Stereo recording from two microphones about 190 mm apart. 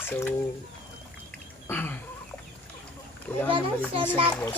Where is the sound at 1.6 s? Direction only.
10° left (ahead or behind).